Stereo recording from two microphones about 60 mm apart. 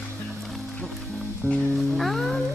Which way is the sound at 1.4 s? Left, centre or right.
Left.